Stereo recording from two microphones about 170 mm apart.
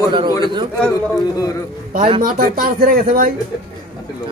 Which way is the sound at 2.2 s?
60° right (ahead or behind).